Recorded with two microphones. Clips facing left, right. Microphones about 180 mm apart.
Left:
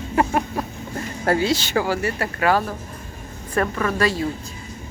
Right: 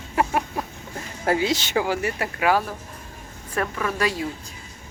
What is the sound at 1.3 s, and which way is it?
Speech, 15° right (ahead or behind).